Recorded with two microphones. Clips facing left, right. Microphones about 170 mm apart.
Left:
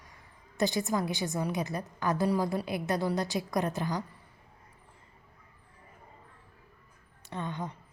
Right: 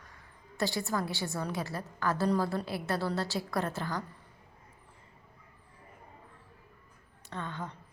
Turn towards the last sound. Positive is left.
turn(degrees=15)  # may be behind; listen again after turning